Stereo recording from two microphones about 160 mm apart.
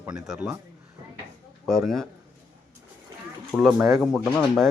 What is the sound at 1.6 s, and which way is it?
Speech, centre (ahead or behind).